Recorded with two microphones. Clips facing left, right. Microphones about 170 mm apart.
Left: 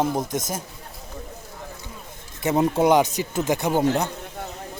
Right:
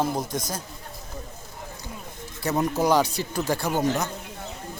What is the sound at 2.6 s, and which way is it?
A man's voice, 25° left (ahead or behind).